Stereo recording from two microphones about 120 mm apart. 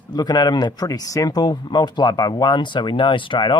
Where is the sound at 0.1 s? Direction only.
35° left (ahead or behind).